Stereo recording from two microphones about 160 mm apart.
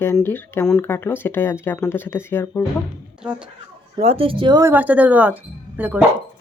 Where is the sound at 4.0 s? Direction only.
40° right (ahead or behind).